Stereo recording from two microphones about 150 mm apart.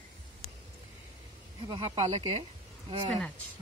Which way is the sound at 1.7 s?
45° right (ahead or behind).